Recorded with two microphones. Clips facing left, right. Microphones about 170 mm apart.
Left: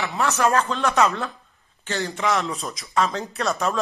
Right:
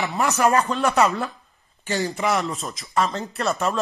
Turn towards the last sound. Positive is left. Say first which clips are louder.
# right 1 dB
turn(degrees=0)  # may be behind; listen again after turning